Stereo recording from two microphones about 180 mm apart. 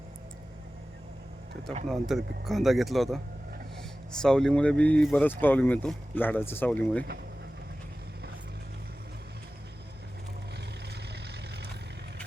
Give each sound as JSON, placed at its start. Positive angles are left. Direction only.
{"t": 1.9, "sound": "speech", "side_deg": 0}
{"t": 4.2, "sound": "speech", "side_deg": 5}
{"t": 11.1, "sound": "vehicle", "side_deg": -65}